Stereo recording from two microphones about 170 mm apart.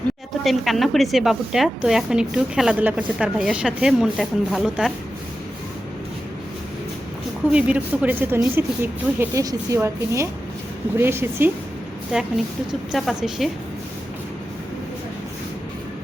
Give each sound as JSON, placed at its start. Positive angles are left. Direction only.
{"t": 0.4, "sound": "a woman's voice", "side_deg": 0}
{"t": 7.5, "sound": "a woman's voice", "side_deg": -10}